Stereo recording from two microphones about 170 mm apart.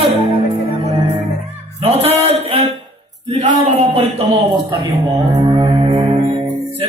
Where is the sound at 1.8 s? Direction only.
35° right (ahead or behind).